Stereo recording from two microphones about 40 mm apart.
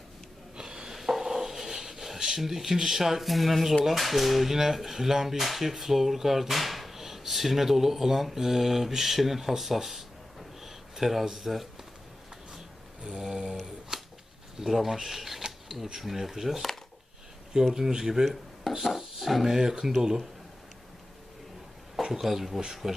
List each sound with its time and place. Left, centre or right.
0.5 s snort: centre
0.9 s dishes: centre
3.8 s speech: centre
13.0 s mantra: right
13.9 s a sound: centre
14.6 s speech: centre
17.7 s speech: centre
22.0 s speech: centre